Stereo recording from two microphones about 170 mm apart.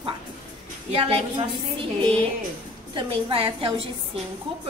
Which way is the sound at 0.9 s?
30° right (ahead or behind).